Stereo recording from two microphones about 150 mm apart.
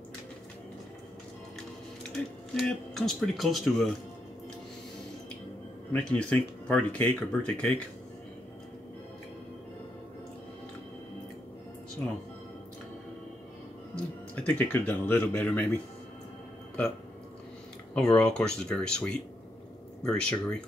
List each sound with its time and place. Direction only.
2.5 s speech: 5° left (ahead or behind)
5.9 s speech: 5° left (ahead or behind)
13.9 s speech: 10° left (ahead or behind)
17.9 s speech: 5° left (ahead or behind)